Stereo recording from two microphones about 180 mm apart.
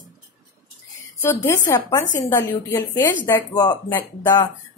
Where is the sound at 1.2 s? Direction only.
15° left (ahead or behind).